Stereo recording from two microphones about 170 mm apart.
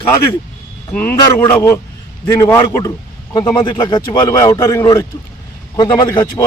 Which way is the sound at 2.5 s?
20° left (ahead or behind).